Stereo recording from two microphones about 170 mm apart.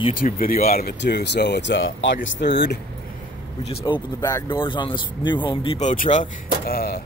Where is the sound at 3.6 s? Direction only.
35° left (ahead or behind).